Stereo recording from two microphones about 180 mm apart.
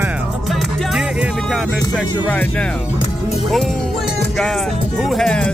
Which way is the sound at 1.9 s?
5° left (ahead or behind).